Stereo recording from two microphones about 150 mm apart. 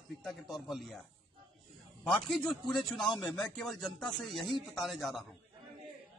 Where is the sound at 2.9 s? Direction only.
30° left (ahead or behind).